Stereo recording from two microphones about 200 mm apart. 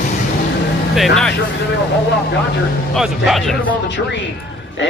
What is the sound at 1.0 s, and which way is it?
Speech, centre (ahead or behind).